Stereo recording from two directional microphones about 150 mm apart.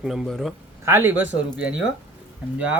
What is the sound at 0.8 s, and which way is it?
Speech, 15° right (ahead or behind).